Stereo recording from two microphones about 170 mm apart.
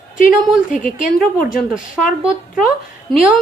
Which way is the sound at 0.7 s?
50° left (ahead or behind).